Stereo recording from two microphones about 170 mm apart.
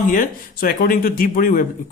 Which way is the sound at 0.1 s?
55° left (ahead or behind).